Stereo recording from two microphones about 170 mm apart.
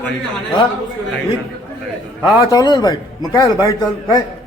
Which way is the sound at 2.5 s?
20° left (ahead or behind).